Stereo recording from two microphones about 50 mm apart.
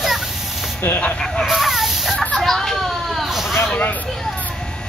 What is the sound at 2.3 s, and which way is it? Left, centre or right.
Children playing, centre.